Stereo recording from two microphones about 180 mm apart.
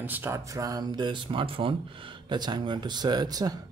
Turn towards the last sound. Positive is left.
turn(degrees=-20)  # may be behind; listen again after turning